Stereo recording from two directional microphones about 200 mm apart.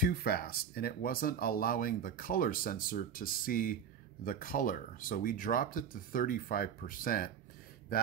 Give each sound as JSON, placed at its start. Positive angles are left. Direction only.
{"t": 0.0, "sound": "speech", "side_deg": 50}